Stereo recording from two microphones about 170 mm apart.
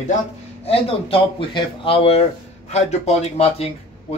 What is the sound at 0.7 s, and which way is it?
Speech, 35° left (ahead or behind).